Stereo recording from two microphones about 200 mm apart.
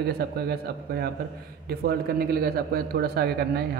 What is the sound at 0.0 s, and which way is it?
A man's voice, 50° right (ahead or behind).